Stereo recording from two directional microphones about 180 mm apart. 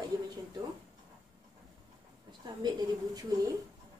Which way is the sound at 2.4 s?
20° right (ahead or behind).